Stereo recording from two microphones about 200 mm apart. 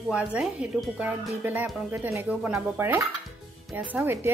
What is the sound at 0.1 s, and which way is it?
Speech, 5° right (ahead or behind).